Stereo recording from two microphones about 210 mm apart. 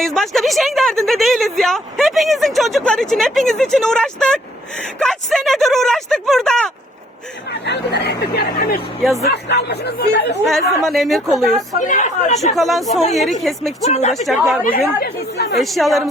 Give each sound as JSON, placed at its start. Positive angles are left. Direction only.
{"t": 0.0, "sound": "a woman's voice", "side_deg": 0}
{"t": 7.5, "sound": "speech", "side_deg": 55}
{"t": 10.5, "sound": "a woman's voice", "side_deg": 0}
{"t": 11.9, "sound": "speech", "side_deg": 35}
{"t": 12.5, "sound": "a woman's voice", "side_deg": 0}
{"t": 13.8, "sound": "speech", "side_deg": 30}
{"t": 14.1, "sound": "a woman's voice", "side_deg": 0}
{"t": 14.6, "sound": "speech", "side_deg": 45}
{"t": 15.5, "sound": "a woman's voice", "side_deg": 0}